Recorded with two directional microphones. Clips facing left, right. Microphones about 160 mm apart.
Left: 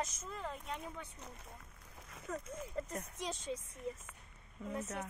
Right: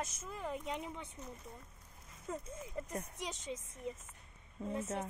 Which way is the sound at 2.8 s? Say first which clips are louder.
Even; 15° right (ahead or behind).